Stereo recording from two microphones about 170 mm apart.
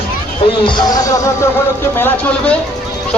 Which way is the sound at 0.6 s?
25° left (ahead or behind).